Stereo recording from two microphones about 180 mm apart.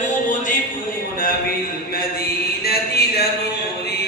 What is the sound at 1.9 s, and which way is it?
Mantra, 60° left (ahead or behind).